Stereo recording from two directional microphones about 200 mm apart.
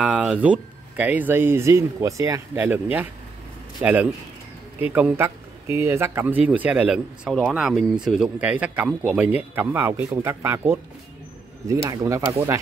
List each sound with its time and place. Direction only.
0.0 s speech: 5° right (ahead or behind)